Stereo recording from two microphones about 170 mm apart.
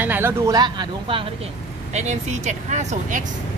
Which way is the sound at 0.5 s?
25° right (ahead or behind).